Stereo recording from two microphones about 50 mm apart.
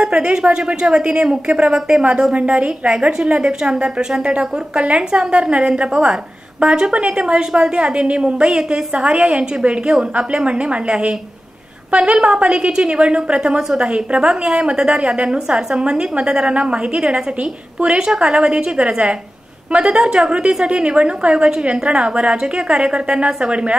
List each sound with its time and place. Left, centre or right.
0.0 s a woman's voice: centre